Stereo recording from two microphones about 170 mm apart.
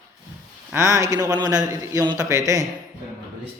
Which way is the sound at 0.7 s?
15° right (ahead or behind).